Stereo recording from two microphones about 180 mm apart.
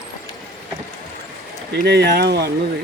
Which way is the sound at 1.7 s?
65° right (ahead or behind).